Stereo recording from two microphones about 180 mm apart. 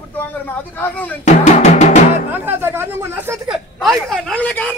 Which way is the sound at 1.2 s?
40° left (ahead or behind).